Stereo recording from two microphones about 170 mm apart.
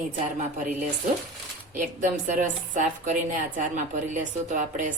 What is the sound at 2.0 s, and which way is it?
A woman's voice, 45° right (ahead or behind).